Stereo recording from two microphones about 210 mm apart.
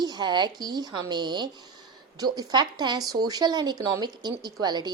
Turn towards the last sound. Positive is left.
turn(degrees=-20)  # may be behind; listen again after turning